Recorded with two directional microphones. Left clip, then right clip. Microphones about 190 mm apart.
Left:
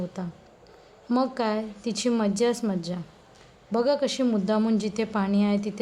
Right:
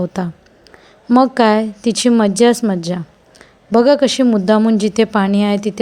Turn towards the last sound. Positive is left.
turn(degrees=-35)  # may be behind; listen again after turning